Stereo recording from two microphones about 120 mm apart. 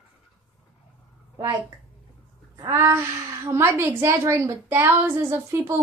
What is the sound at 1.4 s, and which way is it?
A woman's voice, 25° right (ahead or behind).